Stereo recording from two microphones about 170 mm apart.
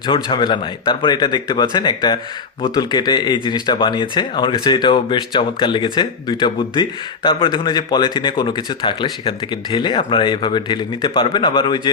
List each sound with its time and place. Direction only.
0.0 s speech: 25° left (ahead or behind)